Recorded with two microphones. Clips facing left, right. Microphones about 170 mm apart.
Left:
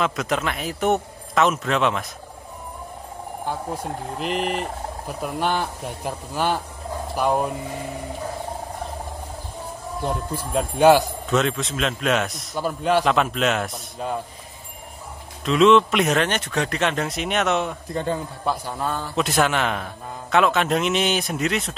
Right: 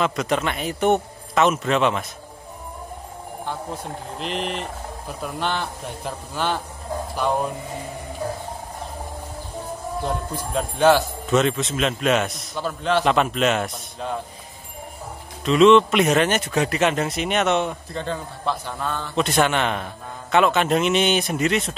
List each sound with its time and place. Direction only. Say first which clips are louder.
0.0 s a man's voice: right 1 dB; centre (ahead or behind)
4.2 s a man's voice: left 3 dB; 5° left (ahead or behind)
10.0 s speech: left 2 dB; 5° left (ahead or behind)
11.2 s a man's voice: right 2 dB; centre (ahead or behind)
15.4 s a man's voice: right 2 dB; centre (ahead or behind)
17.9 s a man's voice: left 3 dB; 10° left (ahead or behind)